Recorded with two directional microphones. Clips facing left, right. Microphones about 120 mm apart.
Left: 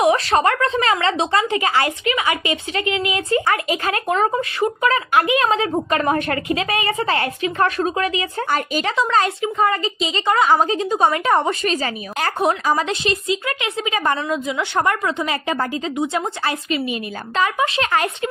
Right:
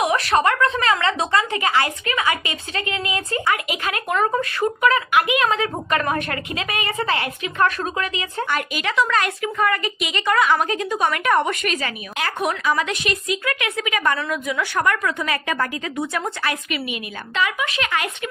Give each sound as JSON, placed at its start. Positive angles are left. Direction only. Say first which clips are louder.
{"t": 0.0, "sound": "a woman's voice", "louder": "left 3 dB", "side_deg": 30}
{"t": 3.4, "sound": "a woman's voice", "louder": "left 3 dB", "side_deg": 35}